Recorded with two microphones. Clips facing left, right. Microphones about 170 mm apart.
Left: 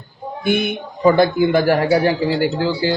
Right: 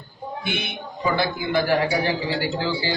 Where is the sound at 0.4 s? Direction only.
45° left (ahead or behind).